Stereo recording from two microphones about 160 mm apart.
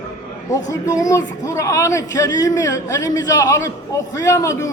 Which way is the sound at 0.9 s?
20° left (ahead or behind).